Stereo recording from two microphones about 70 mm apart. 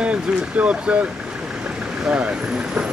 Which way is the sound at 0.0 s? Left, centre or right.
Centre.